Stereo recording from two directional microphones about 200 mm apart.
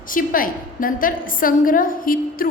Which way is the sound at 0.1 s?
45° left (ahead or behind).